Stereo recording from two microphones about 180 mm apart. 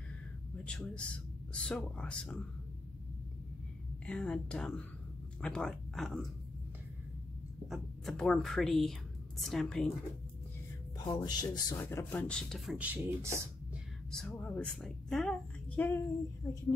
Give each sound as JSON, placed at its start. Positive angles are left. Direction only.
{"t": 0.7, "sound": "a woman's voice", "side_deg": 5}
{"t": 4.0, "sound": "a woman's voice", "side_deg": 5}
{"t": 7.6, "sound": "a woman's voice", "side_deg": 0}
{"t": 11.2, "sound": "speech", "side_deg": 25}
{"t": 11.8, "sound": "a woman's voice", "side_deg": 10}
{"t": 14.1, "sound": "a woman's voice", "side_deg": 10}